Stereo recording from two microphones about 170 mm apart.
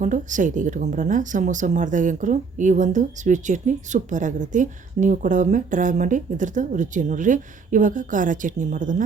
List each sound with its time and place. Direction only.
0.0 s a woman's voice: 50° right (ahead or behind)